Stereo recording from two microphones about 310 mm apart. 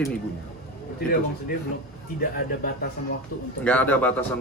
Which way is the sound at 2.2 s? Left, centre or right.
Left.